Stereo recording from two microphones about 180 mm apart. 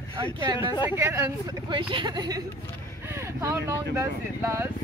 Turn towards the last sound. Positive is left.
turn(degrees=-15)  # may be behind; listen again after turning